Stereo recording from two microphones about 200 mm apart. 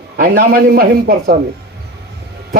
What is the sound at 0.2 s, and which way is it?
A man's voice, 50° right (ahead or behind).